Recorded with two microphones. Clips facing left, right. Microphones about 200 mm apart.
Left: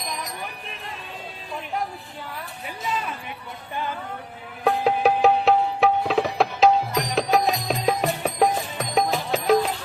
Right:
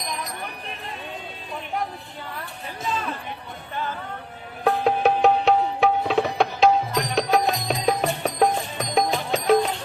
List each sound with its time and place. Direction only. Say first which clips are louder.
4.6 s music: even; centre (ahead or behind)